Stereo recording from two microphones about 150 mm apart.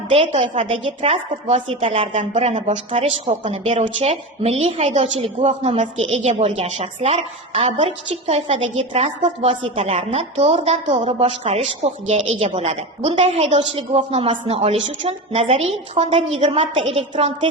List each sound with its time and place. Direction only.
0.1 s a woman's voice: 45° right (ahead or behind)
2.1 s speech: 50° right (ahead or behind)
16.5 s a woman's voice: 35° right (ahead or behind)